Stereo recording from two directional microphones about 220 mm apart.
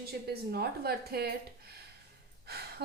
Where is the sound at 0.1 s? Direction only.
45° right (ahead or behind).